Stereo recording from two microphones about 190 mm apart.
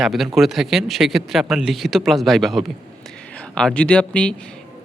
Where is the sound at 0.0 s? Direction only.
Centre (ahead or behind).